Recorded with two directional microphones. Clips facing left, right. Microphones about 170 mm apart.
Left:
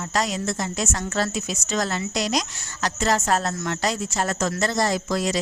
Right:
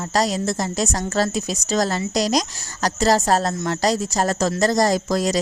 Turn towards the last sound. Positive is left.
turn(degrees=-40)  # may be behind; listen again after turning